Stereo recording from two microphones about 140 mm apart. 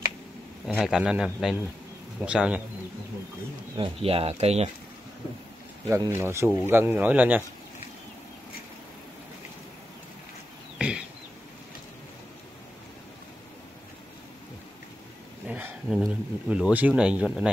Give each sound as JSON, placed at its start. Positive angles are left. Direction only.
{"t": 0.7, "sound": "a man's voice", "side_deg": -5}
{"t": 3.7, "sound": "speech", "side_deg": -40}
{"t": 5.9, "sound": "speech", "side_deg": -20}
{"t": 10.8, "sound": "a sound", "side_deg": -5}
{"t": 15.4, "sound": "a sound", "side_deg": -10}
{"t": 16.1, "sound": "speech", "side_deg": -5}